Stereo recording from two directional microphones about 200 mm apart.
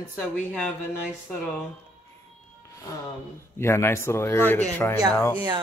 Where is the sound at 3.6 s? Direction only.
15° left (ahead or behind).